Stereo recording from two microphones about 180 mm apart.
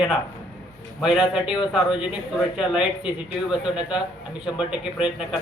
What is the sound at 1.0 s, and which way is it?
A man's voice, 5° right (ahead or behind).